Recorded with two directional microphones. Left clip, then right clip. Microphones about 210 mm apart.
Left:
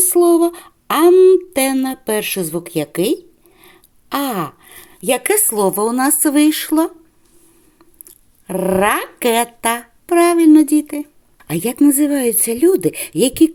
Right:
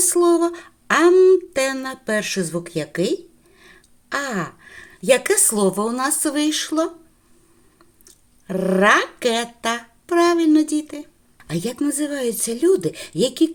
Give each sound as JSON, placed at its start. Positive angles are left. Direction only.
{"t": 0.0, "sound": "a sound", "side_deg": 30}
{"t": 1.1, "sound": "speech", "side_deg": 20}
{"t": 8.4, "sound": "speech", "side_deg": 30}